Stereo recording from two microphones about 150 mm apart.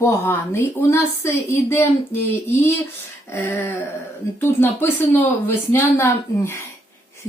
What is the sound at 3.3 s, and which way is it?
A woman's voice, 15° left (ahead or behind).